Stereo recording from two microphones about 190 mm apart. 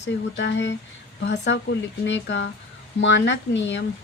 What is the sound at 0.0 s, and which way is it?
A woman's voice, 70° left (ahead or behind).